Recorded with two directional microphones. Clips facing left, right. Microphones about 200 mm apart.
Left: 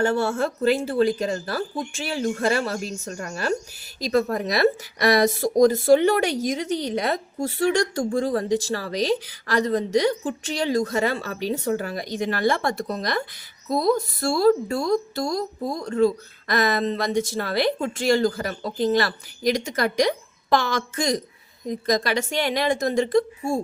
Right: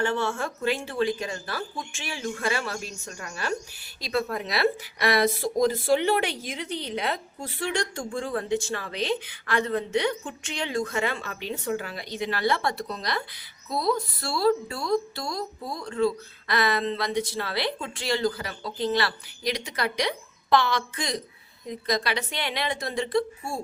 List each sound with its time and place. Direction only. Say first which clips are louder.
0.0 s speech: left 5 dB; 40° left (ahead or behind)